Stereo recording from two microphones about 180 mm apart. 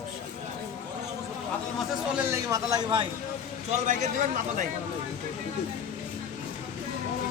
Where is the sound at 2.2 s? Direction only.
20° right (ahead or behind).